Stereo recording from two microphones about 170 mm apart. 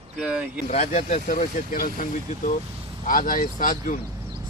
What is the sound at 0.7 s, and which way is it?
Speech, 45° left (ahead or behind).